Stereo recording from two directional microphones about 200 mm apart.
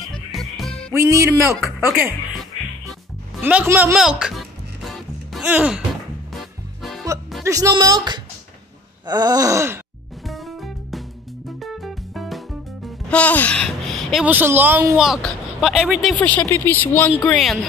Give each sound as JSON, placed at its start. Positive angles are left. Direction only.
{"t": 0.3, "sound": "music", "side_deg": 0}
{"t": 0.9, "sound": "speech", "side_deg": -15}
{"t": 3.4, "sound": "music", "side_deg": -5}
{"t": 7.4, "sound": "groan", "side_deg": -15}
{"t": 10.2, "sound": "music", "side_deg": 0}
{"t": 13.1, "sound": "speech", "side_deg": 5}